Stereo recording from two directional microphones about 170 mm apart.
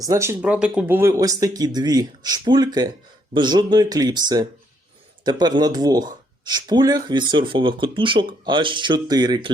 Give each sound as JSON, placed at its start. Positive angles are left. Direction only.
{"t": 0.0, "sound": "speech", "side_deg": -15}
{"t": 5.2, "sound": "speech", "side_deg": -25}